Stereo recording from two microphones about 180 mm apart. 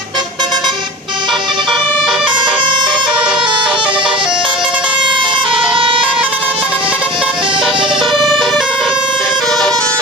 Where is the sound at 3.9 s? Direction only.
25° right (ahead or behind).